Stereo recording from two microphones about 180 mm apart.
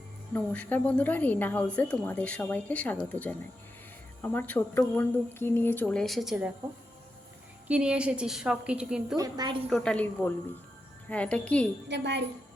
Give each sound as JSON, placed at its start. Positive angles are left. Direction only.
{"t": 0.3, "sound": "speech", "side_deg": 10}
{"t": 7.7, "sound": "a woman's voice", "side_deg": -5}
{"t": 9.1, "sound": "a woman's voice", "side_deg": -20}
{"t": 9.6, "sound": "speech", "side_deg": 5}
{"t": 11.9, "sound": "a woman's voice", "side_deg": -75}